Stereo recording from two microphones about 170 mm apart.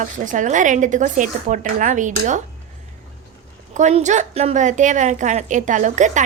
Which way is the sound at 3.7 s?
40° right (ahead or behind).